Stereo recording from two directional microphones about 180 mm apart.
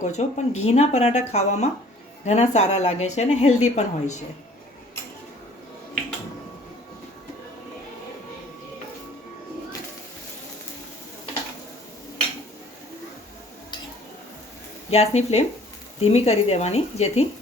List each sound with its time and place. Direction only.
0.0 s a woman's voice: 40° left (ahead or behind)
14.8 s a woman's voice: 35° left (ahead or behind)